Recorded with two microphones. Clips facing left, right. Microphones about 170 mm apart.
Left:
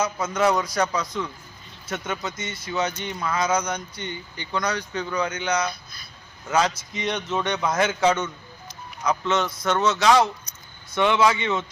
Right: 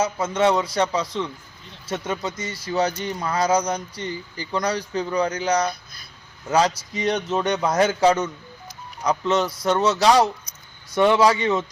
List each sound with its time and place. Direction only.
0.0 s a man's voice: 30° right (ahead or behind)